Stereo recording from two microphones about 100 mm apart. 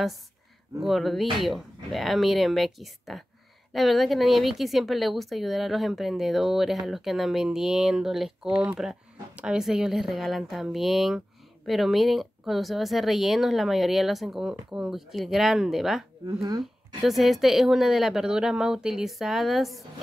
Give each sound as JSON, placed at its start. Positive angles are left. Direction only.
{"t": 0.8, "sound": "speech", "side_deg": 0}
{"t": 16.3, "sound": "speech", "side_deg": -40}
{"t": 17.0, "sound": "speech", "side_deg": 0}